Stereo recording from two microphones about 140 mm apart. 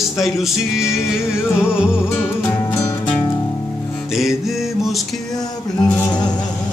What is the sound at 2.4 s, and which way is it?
Music, 15° left (ahead or behind).